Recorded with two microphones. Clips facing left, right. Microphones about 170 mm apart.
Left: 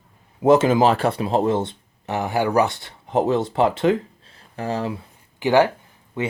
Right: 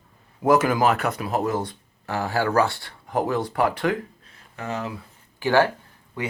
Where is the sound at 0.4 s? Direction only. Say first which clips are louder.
Left 4 dB; 25° left (ahead or behind).